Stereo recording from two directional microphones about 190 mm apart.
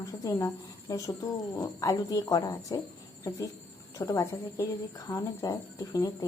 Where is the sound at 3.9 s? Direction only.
15° left (ahead or behind).